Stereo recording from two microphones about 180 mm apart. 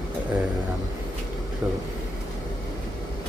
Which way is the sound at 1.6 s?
10° right (ahead or behind).